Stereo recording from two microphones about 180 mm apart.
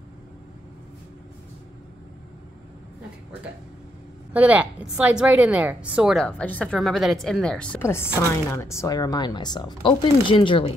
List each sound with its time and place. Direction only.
4.3 s a woman's voice: 10° right (ahead or behind); by 10.7 s 30° left (ahead or behind)